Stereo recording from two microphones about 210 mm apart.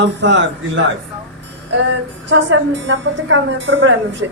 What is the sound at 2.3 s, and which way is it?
A woman's voice, 60° right (ahead or behind).